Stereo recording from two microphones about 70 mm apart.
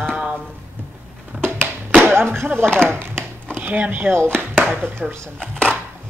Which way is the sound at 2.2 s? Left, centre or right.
Right.